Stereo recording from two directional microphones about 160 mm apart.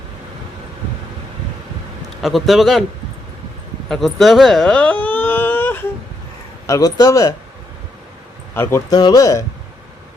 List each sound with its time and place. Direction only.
2.2 s speech: centre (ahead or behind)
3.8 s a sound: centre (ahead or behind)
6.7 s speech: 20° left (ahead or behind)
8.5 s speech: 15° left (ahead or behind)
8.9 s speech: 25° left (ahead or behind)